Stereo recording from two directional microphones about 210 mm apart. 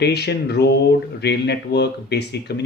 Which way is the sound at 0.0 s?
50° left (ahead or behind).